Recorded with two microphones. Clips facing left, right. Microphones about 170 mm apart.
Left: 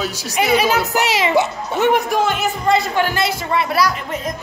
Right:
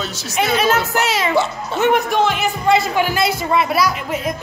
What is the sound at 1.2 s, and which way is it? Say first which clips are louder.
Speech: left 1 dB; 20° left (ahead or behind).